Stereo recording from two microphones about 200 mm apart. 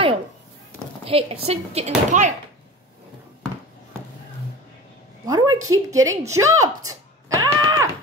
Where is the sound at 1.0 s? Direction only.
30° right (ahead or behind).